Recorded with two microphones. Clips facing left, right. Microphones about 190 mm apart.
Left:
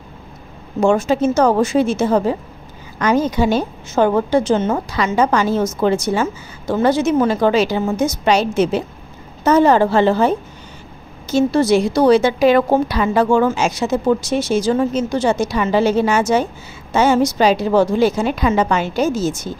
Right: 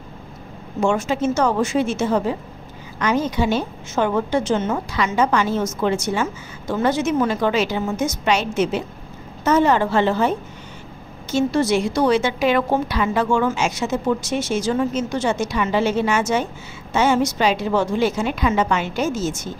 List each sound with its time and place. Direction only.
0.7 s a woman's voice: 35° left (ahead or behind)